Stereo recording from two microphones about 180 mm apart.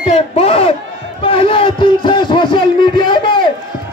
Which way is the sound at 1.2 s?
30° left (ahead or behind).